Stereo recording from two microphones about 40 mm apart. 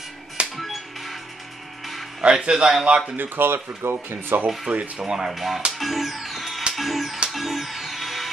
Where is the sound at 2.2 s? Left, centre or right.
Right.